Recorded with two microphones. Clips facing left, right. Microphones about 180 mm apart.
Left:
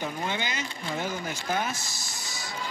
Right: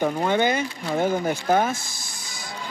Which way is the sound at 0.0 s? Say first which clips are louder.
Right 10 dB; 55° right (ahead or behind).